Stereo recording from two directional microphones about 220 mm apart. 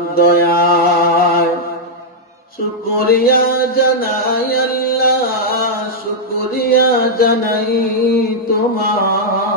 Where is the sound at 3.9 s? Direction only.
45° left (ahead or behind).